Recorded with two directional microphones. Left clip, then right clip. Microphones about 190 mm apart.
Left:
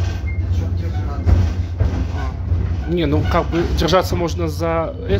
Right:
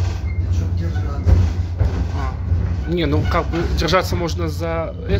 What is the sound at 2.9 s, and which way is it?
A man's voice, 10° left (ahead or behind).